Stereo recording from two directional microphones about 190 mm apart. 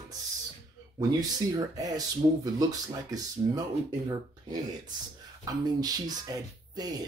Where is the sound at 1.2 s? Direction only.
20° right (ahead or behind).